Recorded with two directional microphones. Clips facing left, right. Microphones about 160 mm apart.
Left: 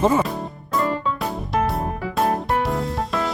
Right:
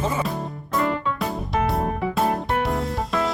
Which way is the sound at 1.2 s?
Centre (ahead or behind).